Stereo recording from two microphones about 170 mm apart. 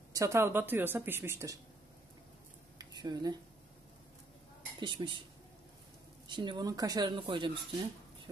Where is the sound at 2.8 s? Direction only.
25° right (ahead or behind).